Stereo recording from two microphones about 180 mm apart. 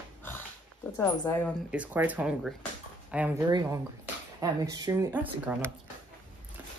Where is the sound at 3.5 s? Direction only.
25° right (ahead or behind).